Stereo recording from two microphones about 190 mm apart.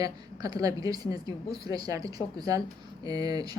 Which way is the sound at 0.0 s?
20° right (ahead or behind).